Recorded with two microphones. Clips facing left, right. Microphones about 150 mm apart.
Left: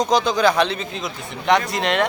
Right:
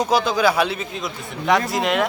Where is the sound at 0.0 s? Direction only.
5° right (ahead or behind).